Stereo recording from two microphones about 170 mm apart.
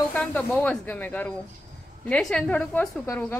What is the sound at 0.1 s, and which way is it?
A woman's voice, 10° left (ahead or behind).